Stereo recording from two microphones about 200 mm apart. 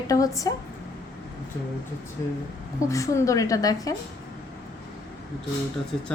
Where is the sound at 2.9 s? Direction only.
15° left (ahead or behind).